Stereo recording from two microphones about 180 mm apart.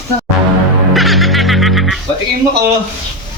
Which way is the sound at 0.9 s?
Centre (ahead or behind).